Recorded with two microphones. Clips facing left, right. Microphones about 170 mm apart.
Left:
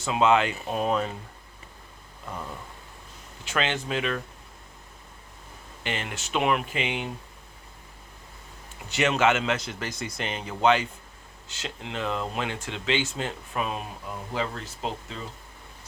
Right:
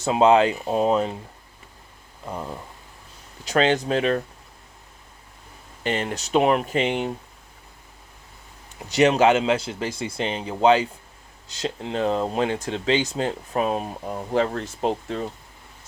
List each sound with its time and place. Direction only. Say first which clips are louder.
0.0 s speech: right 5 dB; 35° right (ahead or behind)
2.2 s speech: right 5 dB; 25° right (ahead or behind)
3.4 s speech: right 8 dB; 40° right (ahead or behind)
5.8 s speech: right 7 dB; 40° right (ahead or behind)
8.9 s speech: right 6 dB; 35° right (ahead or behind)